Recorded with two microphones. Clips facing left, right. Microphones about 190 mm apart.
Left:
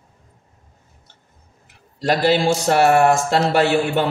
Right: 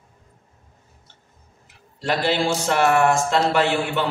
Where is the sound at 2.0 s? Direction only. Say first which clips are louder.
Left 5 dB; 40° left (ahead or behind).